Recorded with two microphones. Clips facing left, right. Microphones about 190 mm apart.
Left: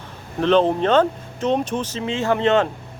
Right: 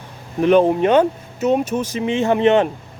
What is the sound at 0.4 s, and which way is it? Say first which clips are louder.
Speech: right 3 dB; 10° right (ahead or behind).